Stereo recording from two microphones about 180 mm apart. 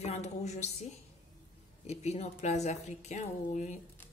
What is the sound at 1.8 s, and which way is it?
A woman's voice, 35° left (ahead or behind).